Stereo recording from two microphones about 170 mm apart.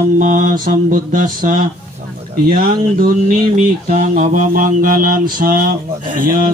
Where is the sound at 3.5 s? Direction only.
45° right (ahead or behind).